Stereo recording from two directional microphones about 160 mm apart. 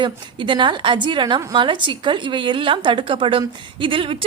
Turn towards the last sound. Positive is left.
turn(degrees=-35)  # may be behind; listen again after turning